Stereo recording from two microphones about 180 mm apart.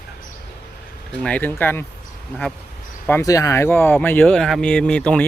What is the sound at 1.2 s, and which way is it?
Speech, 10° left (ahead or behind).